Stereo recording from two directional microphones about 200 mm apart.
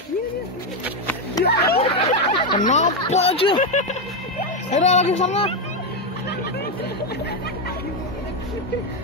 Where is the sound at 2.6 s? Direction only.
35° left (ahead or behind).